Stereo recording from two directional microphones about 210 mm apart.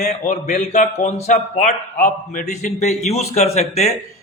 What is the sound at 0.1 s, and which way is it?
A man's voice, 35° left (ahead or behind).